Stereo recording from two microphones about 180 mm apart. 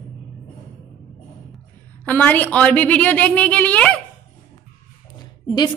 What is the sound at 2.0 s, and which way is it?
A woman's voice, 10° left (ahead or behind).